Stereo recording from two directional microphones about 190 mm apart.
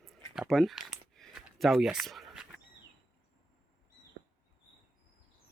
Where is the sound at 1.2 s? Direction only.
Centre (ahead or behind).